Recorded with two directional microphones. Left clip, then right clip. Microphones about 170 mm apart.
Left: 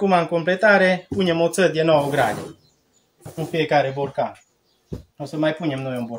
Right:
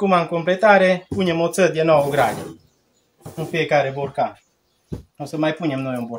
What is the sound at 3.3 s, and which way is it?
Speech, centre (ahead or behind).